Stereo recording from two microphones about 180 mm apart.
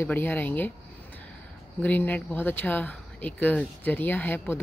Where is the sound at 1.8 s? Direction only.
10° left (ahead or behind).